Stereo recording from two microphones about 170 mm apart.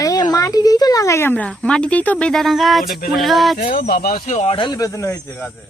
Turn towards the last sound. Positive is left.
turn(degrees=15)  # may be behind; listen again after turning